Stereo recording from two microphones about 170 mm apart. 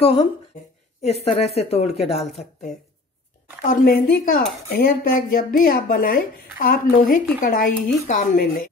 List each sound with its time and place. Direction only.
1.2 s speech: 35° left (ahead or behind)
2.1 s speech: centre (ahead or behind)
3.6 s speech: 55° left (ahead or behind)